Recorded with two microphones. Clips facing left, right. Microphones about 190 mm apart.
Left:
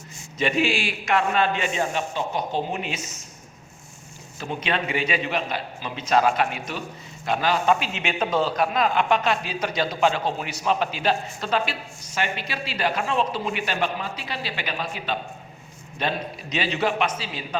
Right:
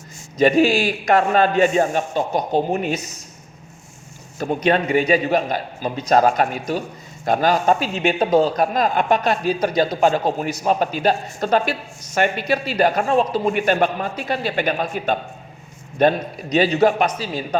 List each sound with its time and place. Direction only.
0.3 s a man's voice: 40° right (ahead or behind)
4.4 s a man's voice: 45° right (ahead or behind)